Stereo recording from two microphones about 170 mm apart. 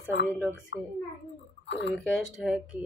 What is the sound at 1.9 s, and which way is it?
Speech, centre (ahead or behind).